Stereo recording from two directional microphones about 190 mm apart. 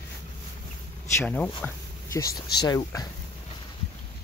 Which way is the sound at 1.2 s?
10° left (ahead or behind).